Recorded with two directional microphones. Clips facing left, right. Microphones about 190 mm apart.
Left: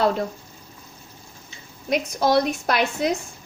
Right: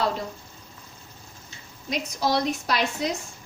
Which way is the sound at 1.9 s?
55° left (ahead or behind).